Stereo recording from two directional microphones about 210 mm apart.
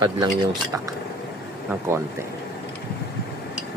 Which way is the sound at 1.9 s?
15° right (ahead or behind).